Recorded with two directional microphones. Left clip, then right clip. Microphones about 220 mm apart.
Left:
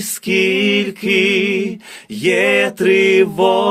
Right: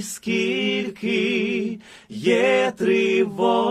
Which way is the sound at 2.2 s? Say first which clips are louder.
Left 4 dB; 40° left (ahead or behind).